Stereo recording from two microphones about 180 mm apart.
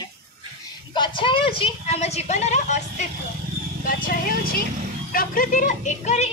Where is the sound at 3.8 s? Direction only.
50° left (ahead or behind).